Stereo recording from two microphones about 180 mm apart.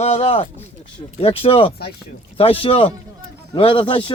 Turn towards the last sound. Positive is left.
turn(degrees=30)  # may be behind; listen again after turning